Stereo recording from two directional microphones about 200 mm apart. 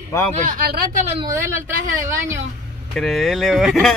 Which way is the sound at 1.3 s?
15° right (ahead or behind).